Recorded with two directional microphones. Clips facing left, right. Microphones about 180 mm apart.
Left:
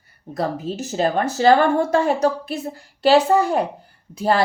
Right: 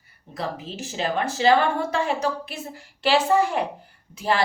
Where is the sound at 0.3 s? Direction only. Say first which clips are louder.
Left 7 dB; 40° left (ahead or behind).